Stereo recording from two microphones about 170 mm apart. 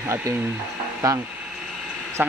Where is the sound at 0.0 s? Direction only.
15° right (ahead or behind).